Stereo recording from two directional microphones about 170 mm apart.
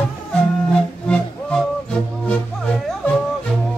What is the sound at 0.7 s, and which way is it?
Music, 5° left (ahead or behind).